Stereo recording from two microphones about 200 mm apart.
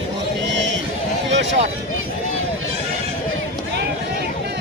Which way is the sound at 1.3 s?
65° right (ahead or behind).